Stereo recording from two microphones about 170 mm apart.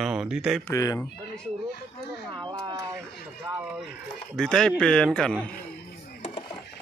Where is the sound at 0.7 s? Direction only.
20° left (ahead or behind).